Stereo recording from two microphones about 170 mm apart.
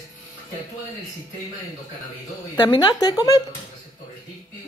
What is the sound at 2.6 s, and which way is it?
Speech, 25° left (ahead or behind).